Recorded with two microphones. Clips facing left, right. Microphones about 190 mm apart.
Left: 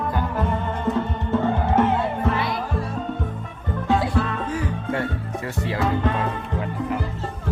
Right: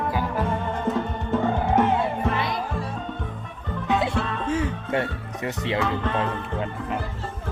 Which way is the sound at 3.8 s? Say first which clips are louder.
Left 2 dB; 20° right (ahead or behind).